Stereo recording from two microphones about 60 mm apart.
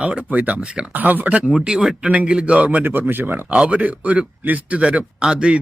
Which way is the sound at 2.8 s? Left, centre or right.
Right.